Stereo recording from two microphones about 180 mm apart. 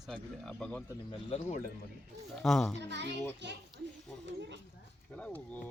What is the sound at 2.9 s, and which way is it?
Speech, 75° right (ahead or behind).